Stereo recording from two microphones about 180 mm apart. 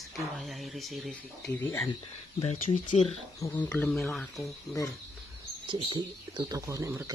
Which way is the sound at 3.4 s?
10° left (ahead or behind).